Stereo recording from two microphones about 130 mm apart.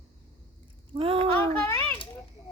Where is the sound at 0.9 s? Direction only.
45° right (ahead or behind).